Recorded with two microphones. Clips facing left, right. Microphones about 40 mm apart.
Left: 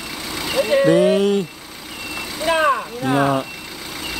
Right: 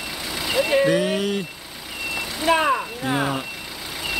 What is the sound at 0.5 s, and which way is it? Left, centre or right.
Speech, centre.